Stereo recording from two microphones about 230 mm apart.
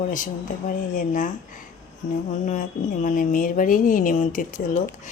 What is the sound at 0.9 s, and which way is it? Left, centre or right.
Speech, left.